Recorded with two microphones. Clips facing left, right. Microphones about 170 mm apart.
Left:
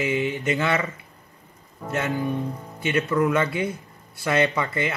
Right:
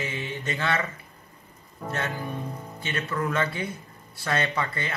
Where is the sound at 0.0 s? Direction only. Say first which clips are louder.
Left 8 dB; 15° left (ahead or behind).